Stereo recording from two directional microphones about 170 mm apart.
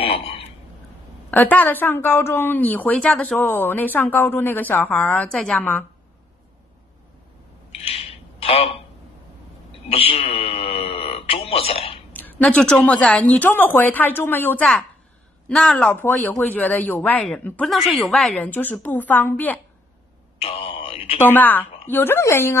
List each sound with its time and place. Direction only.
0.0 s a sound: 35° left (ahead or behind)
1.3 s a woman's voice: 10° left (ahead or behind)
7.8 s a sound: 35° left (ahead or behind)
9.8 s a man's voice: 35° left (ahead or behind)
12.1 s a woman's voice: 10° left (ahead or behind)
20.4 s a man's voice: 30° left (ahead or behind)
21.2 s a woman's voice: 10° left (ahead or behind)